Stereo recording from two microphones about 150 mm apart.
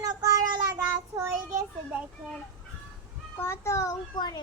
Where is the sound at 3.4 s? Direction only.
15° left (ahead or behind).